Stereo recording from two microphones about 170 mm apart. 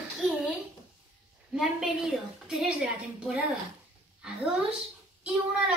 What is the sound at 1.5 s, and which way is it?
A woman's voice, centre (ahead or behind).